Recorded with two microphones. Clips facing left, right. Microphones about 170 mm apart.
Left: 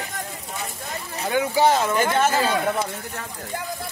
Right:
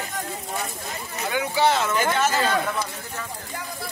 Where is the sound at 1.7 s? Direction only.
35° left (ahead or behind).